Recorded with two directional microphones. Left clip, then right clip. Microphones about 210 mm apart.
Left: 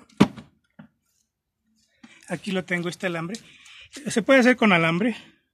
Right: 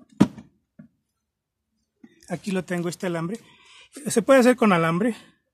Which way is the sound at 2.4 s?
35° right (ahead or behind).